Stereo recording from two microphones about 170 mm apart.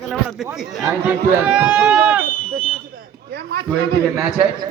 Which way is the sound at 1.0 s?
10° right (ahead or behind).